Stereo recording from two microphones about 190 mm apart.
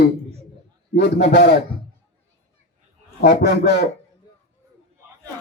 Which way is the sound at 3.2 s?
60° left (ahead or behind).